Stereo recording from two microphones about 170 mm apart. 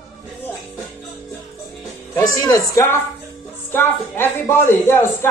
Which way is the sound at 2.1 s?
20° left (ahead or behind).